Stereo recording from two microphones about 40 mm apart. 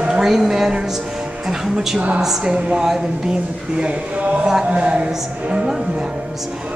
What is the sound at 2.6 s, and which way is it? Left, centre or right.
Speech, right.